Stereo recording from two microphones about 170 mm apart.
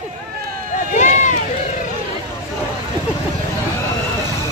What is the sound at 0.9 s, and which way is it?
Run, 45° left (ahead or behind).